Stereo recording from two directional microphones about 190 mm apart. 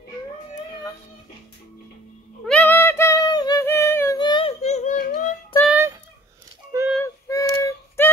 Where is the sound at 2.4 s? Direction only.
10° left (ahead or behind).